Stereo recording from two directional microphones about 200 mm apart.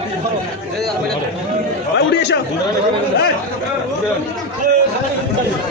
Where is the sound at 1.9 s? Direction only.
60° left (ahead or behind).